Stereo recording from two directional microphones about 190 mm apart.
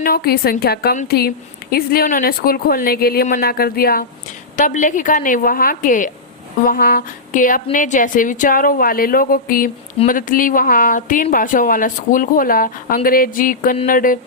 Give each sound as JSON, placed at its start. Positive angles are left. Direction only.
{"t": 0.0, "sound": "a woman's voice", "side_deg": 55}
{"t": 4.5, "sound": "speech", "side_deg": 40}